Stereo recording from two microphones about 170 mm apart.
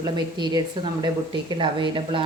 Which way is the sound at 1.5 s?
30° right (ahead or behind).